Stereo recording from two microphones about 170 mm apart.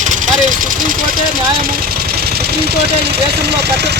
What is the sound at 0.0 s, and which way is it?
Vehicle, 50° right (ahead or behind).